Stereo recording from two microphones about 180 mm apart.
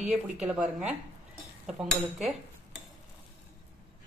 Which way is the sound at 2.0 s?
Centre (ahead or behind).